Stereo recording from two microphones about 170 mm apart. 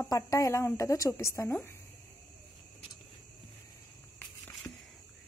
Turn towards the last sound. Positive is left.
turn(degrees=10)  # may be behind; listen again after turning